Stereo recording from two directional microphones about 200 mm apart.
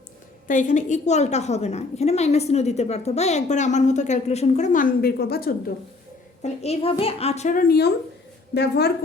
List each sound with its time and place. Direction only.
0.4 s a woman's voice: 40° left (ahead or behind)
6.4 s a woman's voice: 30° left (ahead or behind)
7.7 s a woman's voice: 55° left (ahead or behind)